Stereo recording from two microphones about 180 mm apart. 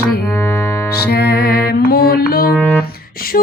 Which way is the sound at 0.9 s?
60° left (ahead or behind).